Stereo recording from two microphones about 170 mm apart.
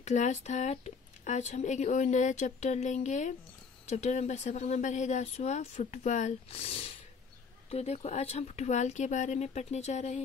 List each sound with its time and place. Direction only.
0.0 s speech: 45° left (ahead or behind)